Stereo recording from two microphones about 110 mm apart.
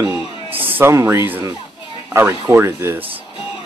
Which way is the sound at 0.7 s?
20° right (ahead or behind).